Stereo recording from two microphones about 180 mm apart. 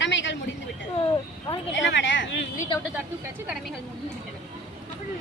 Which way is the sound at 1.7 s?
90° left.